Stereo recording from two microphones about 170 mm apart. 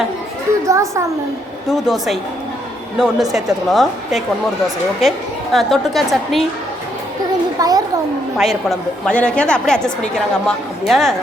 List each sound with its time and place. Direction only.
0.6 s a child's voice: 15° right (ahead or behind)
1.7 s a woman's voice: centre (ahead or behind)
7.6 s a child's voice: 25° right (ahead or behind)
8.4 s a woman's voice: centre (ahead or behind)